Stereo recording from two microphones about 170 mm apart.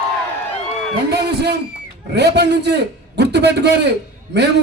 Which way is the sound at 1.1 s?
75° right (ahead or behind).